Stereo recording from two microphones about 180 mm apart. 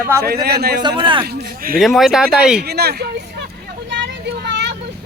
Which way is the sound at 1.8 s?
Centre (ahead or behind).